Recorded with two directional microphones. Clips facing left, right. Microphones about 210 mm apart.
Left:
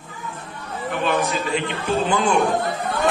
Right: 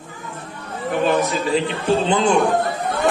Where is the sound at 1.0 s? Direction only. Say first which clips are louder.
Right 3 dB; 30° right (ahead or behind).